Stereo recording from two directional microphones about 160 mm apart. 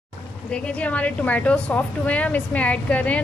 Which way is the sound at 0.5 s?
5° left (ahead or behind).